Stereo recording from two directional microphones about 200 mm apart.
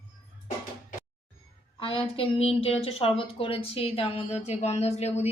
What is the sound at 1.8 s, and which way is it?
A woman's voice, 25° left (ahead or behind).